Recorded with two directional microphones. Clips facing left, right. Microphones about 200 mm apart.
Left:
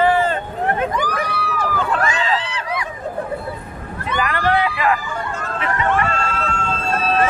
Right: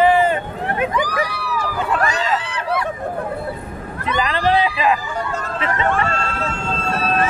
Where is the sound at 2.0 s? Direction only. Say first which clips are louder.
Even; 40° right (ahead or behind).